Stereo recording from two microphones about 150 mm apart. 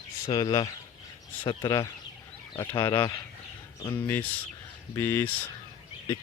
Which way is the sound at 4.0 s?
15° left (ahead or behind).